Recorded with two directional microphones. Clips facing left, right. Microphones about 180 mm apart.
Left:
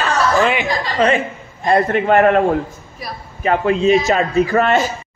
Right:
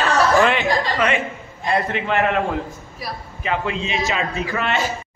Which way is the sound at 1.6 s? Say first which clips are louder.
Left 7 dB; 50° left (ahead or behind).